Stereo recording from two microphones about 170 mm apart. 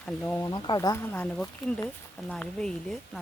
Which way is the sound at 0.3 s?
10° left (ahead or behind).